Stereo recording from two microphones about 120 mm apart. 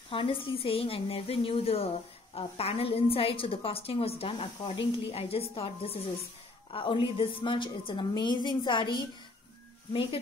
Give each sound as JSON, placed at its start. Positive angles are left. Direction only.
{"t": 0.1, "sound": "a woman's voice", "side_deg": 50}